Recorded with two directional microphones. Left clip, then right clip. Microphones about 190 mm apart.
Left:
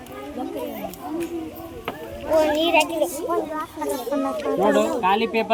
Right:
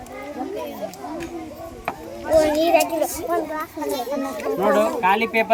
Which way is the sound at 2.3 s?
40° right (ahead or behind).